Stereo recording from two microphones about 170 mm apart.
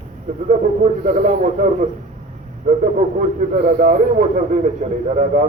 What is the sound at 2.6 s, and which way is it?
A man's voice, 45° right (ahead or behind).